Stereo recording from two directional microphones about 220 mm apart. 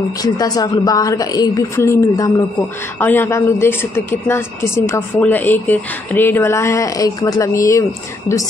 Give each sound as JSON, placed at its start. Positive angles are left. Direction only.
{"t": 0.2, "sound": "a woman's voice", "side_deg": 15}